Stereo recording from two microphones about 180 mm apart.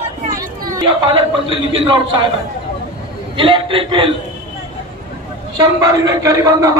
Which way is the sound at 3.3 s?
30° right (ahead or behind).